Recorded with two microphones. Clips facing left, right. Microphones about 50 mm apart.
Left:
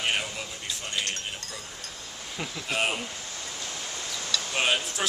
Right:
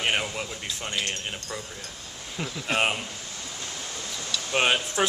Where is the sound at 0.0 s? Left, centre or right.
Right.